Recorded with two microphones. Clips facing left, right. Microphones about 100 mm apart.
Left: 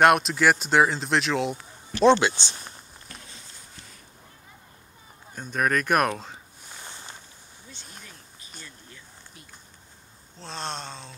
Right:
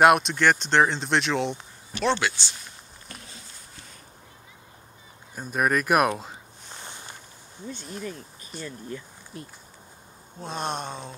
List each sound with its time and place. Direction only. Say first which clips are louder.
0.0 s speech: right 1 dB; centre (ahead or behind)
2.0 s speech: left 6 dB; 20° left (ahead or behind)
5.3 s speech: right 1 dB; 5° right (ahead or behind)
7.7 s speech: right 13 dB; 55° right (ahead or behind)
10.3 s speech: right 4 dB; 15° right (ahead or behind)